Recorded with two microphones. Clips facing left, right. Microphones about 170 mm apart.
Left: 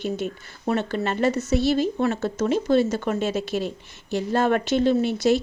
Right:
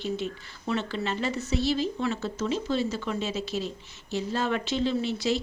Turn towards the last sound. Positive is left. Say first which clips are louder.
# left 7 dB
turn(degrees=50)  # may be behind; listen again after turning